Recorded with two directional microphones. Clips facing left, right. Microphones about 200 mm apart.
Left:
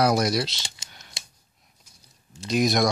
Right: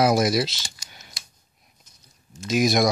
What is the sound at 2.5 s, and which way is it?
Speech, 5° right (ahead or behind).